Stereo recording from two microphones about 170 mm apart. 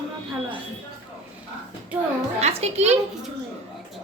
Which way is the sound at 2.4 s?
40° right (ahead or behind).